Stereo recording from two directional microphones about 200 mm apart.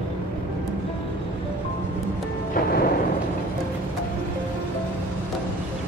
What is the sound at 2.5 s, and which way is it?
Music, 50° left (ahead or behind).